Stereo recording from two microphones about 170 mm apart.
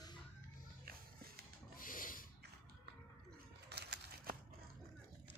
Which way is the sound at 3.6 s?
75° right (ahead or behind).